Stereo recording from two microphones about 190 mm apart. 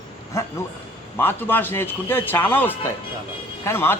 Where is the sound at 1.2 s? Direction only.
10° left (ahead or behind).